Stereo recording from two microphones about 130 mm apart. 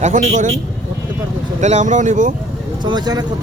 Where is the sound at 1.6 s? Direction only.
65° right (ahead or behind).